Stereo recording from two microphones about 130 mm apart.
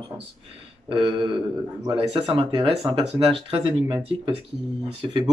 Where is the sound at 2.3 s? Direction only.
45° right (ahead or behind).